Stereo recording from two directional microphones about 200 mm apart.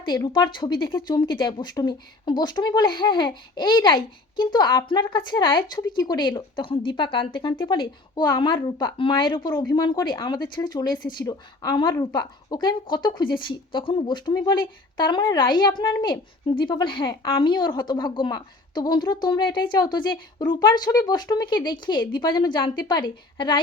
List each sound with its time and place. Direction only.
0.0 s speech: 20° left (ahead or behind)